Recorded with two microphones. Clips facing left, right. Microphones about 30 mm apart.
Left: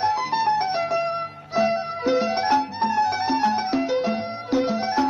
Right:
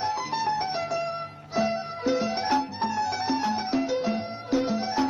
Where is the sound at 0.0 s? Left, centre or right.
Centre.